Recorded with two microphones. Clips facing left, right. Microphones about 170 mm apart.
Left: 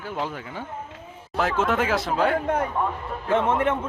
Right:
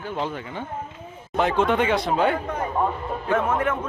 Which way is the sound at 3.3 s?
25° left (ahead or behind).